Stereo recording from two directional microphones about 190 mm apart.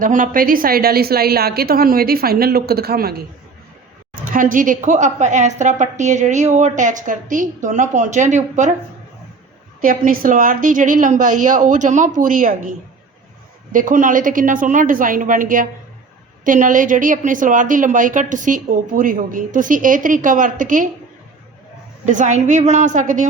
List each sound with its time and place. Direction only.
0.0 s a woman's voice: 45° right (ahead or behind)
4.3 s a woman's voice: 45° right (ahead or behind)
9.8 s a woman's voice: 45° right (ahead or behind)
13.7 s a woman's voice: 45° right (ahead or behind)
22.0 s a woman's voice: 40° right (ahead or behind)